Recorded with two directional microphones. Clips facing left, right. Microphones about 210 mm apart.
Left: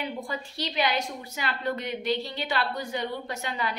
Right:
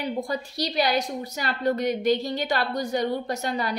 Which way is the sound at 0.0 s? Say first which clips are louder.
Right 5 dB; 40° right (ahead or behind).